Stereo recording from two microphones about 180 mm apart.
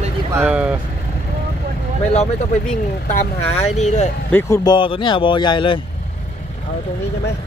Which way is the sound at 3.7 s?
40° left (ahead or behind).